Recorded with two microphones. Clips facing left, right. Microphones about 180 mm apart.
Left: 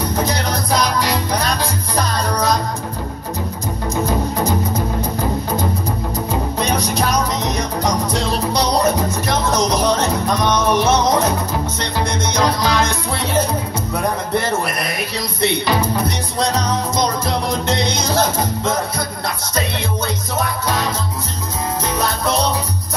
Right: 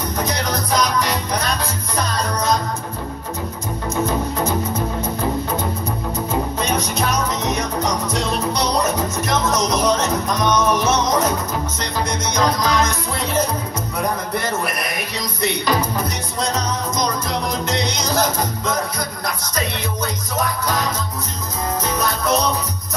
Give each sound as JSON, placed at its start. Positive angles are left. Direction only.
{"t": 0.2, "sound": "music", "side_deg": 30}
{"t": 6.6, "sound": "music", "side_deg": 35}
{"t": 15.4, "sound": "music", "side_deg": 30}
{"t": 18.7, "sound": "music", "side_deg": 30}
{"t": 21.9, "sound": "music", "side_deg": 30}